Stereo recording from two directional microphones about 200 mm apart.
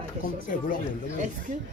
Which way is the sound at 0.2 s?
45° left (ahead or behind).